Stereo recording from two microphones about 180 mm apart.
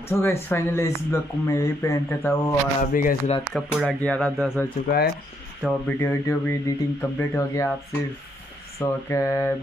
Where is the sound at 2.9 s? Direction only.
50° left (ahead or behind).